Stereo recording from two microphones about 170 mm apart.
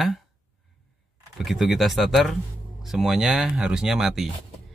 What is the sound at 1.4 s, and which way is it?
Speech, centre (ahead or behind).